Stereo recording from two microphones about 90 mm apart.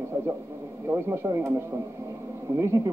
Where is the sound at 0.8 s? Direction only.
30° right (ahead or behind).